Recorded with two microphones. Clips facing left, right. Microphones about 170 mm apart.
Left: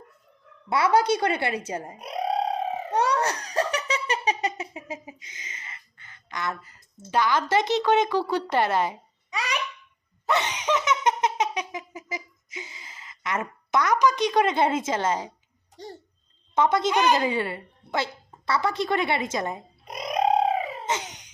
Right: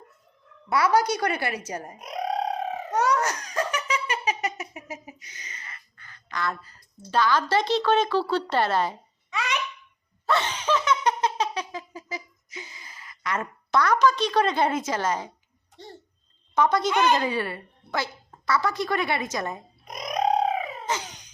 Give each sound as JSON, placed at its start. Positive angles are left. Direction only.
{"t": 0.7, "sound": "speech", "side_deg": 25}
{"t": 2.9, "sound": "laughter", "side_deg": 30}
{"t": 7.1, "sound": "a woman's voice", "side_deg": 20}
{"t": 9.3, "sound": "babbling", "side_deg": 35}
{"t": 10.2, "sound": "laughter", "side_deg": 20}
{"t": 16.6, "sound": "speech", "side_deg": 25}
{"t": 20.1, "sound": "bird", "side_deg": 30}